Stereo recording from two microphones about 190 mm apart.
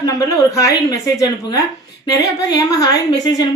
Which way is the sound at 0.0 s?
20° left (ahead or behind).